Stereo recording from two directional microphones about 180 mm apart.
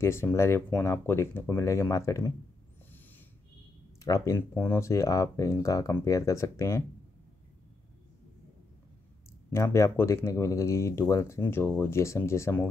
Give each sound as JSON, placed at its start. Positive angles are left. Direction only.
{"t": 0.0, "sound": "speech", "side_deg": 15}
{"t": 4.0, "sound": "speech", "side_deg": 20}
{"t": 9.5, "sound": "speech", "side_deg": 15}